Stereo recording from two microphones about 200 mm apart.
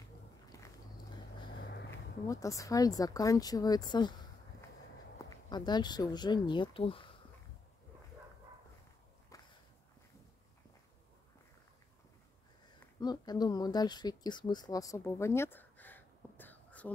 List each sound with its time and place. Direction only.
0.5 s a sound: 15° left (ahead or behind)
1.5 s vehicle: 55° left (ahead or behind)
2.4 s speech: 15° left (ahead or behind)
5.5 s speech: 20° left (ahead or behind)
9.3 s a sound: 15° left (ahead or behind)
13.0 s speech: 20° left (ahead or behind)